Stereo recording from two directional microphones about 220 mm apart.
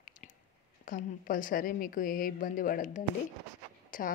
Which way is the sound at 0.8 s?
40° left (ahead or behind).